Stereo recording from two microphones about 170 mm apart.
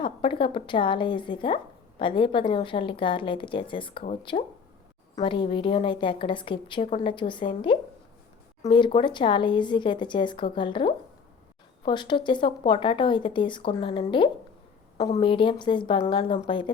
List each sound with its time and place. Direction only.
0.0 s a woman's voice: 30° left (ahead or behind)